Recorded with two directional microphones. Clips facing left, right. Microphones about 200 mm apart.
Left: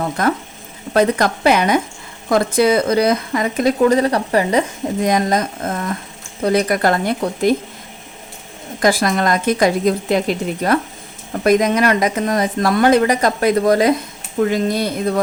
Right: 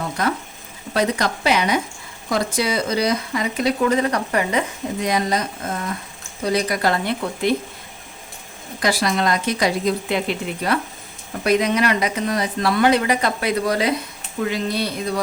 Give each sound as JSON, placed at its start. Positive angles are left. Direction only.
{"t": 0.2, "sound": "speech", "side_deg": 50}
{"t": 4.9, "sound": "speech", "side_deg": 50}
{"t": 8.8, "sound": "speech", "side_deg": 50}